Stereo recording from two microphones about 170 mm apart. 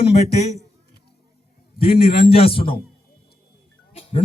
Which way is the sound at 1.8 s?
35° left (ahead or behind).